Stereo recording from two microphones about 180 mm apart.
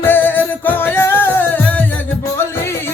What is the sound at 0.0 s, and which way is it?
Music, 10° left (ahead or behind).